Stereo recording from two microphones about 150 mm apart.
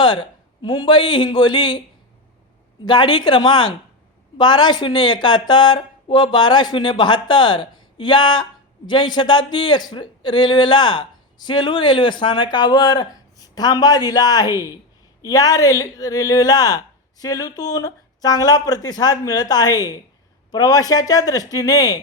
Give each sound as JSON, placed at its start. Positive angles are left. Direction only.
{"t": 0.0, "sound": "speech", "side_deg": 30}
{"t": 2.8, "sound": "speech", "side_deg": 30}